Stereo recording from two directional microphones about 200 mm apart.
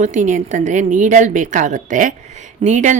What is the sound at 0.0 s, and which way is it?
Speech, 40° right (ahead or behind).